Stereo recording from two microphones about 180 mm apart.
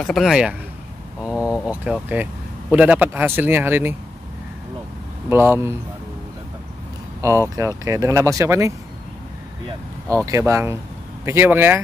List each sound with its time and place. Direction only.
0.0 s speech: centre (ahead or behind)
5.3 s speech: 10° right (ahead or behind)
7.2 s speech: 15° right (ahead or behind)
10.0 s speech: 15° right (ahead or behind)